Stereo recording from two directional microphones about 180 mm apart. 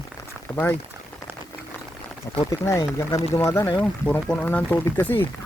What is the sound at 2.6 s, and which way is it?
Speech, 15° left (ahead or behind).